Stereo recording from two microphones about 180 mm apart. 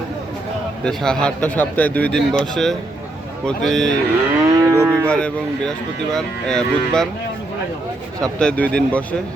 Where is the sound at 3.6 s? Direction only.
Centre (ahead or behind).